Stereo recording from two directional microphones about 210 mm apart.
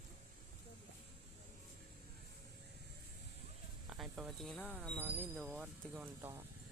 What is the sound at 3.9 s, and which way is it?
Speech, centre (ahead or behind).